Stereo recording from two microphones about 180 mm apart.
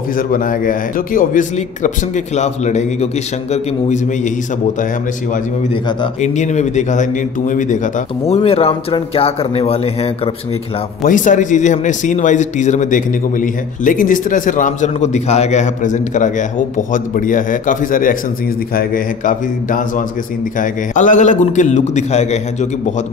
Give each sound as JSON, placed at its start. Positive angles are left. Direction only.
{"t": 0.3, "sound": "speech", "side_deg": 50}
{"t": 6.2, "sound": "speech", "side_deg": 40}
{"t": 8.4, "sound": "speech", "side_deg": 35}
{"t": 11.1, "sound": "speech", "side_deg": 45}